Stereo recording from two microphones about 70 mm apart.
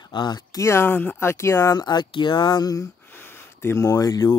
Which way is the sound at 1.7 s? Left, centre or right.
Left.